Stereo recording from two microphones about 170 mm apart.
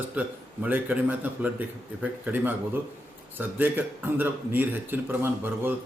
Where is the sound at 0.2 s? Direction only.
10° right (ahead or behind).